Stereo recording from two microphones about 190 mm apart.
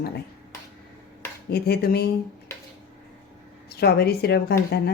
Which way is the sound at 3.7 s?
60° left (ahead or behind).